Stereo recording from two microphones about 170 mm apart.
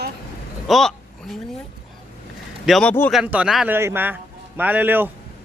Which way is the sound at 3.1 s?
5° right (ahead or behind).